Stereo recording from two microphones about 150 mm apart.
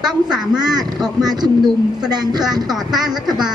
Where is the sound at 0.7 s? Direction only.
25° right (ahead or behind).